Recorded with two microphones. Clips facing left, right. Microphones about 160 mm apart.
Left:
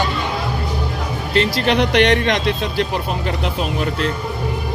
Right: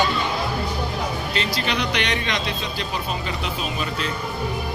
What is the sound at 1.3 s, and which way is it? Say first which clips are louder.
Speech: left 11 dB; 60° left (ahead or behind).